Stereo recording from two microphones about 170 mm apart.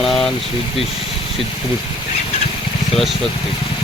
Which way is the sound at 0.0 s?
Centre (ahead or behind).